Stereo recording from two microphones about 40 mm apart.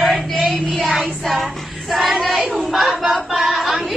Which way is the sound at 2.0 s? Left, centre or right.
Centre.